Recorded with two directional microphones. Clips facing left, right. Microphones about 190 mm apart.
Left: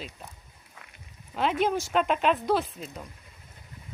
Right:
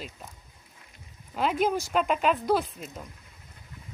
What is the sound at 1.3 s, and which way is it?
A woman's voice, 5° right (ahead or behind).